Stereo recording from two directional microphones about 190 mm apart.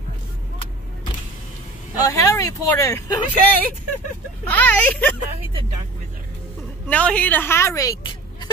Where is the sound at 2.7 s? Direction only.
15° left (ahead or behind).